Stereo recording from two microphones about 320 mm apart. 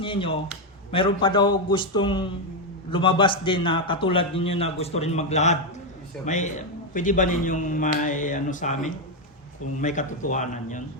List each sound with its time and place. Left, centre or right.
0.0 s a man's voice: centre